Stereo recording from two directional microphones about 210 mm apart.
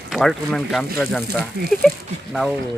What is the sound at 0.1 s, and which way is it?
A woman's voice, centre (ahead or behind).